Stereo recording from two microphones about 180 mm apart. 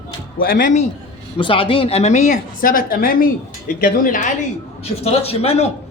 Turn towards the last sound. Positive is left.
turn(degrees=35)  # may be behind; listen again after turning